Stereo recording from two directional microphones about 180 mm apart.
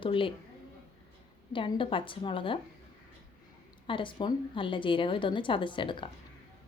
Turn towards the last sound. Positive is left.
turn(degrees=25)  # may be behind; listen again after turning